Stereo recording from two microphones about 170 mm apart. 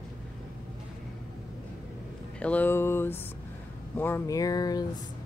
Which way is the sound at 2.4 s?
10° left (ahead or behind).